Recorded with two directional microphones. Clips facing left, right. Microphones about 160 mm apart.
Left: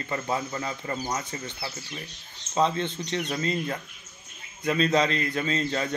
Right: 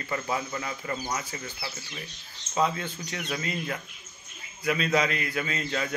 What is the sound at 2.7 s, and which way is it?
A man's voice, 25° left (ahead or behind).